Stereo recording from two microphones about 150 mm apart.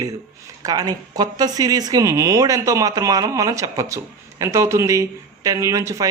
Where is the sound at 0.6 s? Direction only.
25° right (ahead or behind).